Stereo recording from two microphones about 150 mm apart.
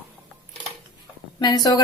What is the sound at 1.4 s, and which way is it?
Speech, 25° left (ahead or behind).